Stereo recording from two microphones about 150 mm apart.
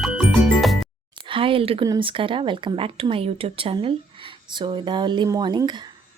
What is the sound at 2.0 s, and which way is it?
Speech, 35° right (ahead or behind).